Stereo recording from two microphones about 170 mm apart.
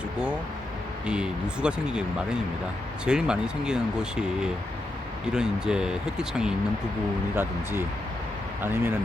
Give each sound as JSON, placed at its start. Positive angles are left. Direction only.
{"t": 1.0, "sound": "speech", "side_deg": -5}
{"t": 5.3, "sound": "speech", "side_deg": -5}
{"t": 7.3, "sound": "speech", "side_deg": -15}